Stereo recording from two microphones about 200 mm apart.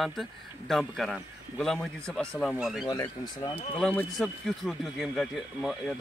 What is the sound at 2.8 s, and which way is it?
Speech, 20° left (ahead or behind).